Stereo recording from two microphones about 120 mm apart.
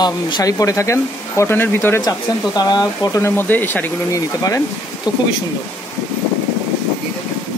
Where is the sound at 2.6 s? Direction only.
35° left (ahead or behind).